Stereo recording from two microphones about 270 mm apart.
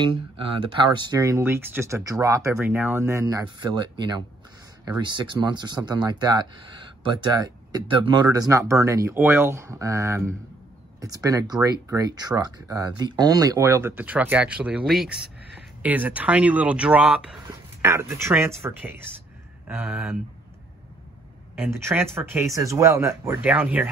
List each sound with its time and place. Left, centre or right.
0.0 s speech: centre
15.1 s a sound: right
15.8 s speech: centre
21.5 s speech: centre